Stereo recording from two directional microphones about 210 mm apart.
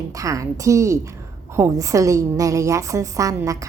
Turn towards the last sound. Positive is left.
turn(degrees=-15)  # may be behind; listen again after turning